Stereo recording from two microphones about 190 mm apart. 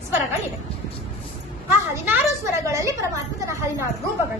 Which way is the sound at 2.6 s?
15° right (ahead or behind).